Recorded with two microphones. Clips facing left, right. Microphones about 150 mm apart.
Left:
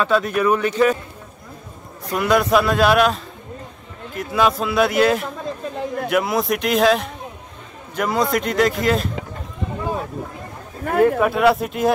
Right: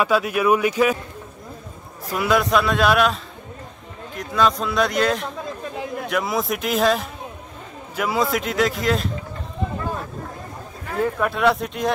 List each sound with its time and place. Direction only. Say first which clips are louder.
0.0 s speech: left 1 dB; 10° right (ahead or behind)
2.0 s a man's voice: left 2 dB; centre (ahead or behind)
10.9 s a sound: left 8 dB; 65° left (ahead or behind)
11.1 s a man's voice: left 4 dB; 5° left (ahead or behind)